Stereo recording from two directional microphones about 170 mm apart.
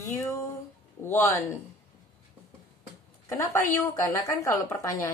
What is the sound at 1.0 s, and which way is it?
Speech, 15° left (ahead or behind).